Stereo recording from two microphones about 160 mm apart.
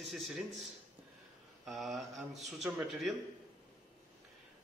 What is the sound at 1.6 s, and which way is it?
Speech, centre (ahead or behind).